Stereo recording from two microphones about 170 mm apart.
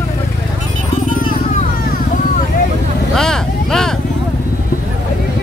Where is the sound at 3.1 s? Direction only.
5° left (ahead or behind).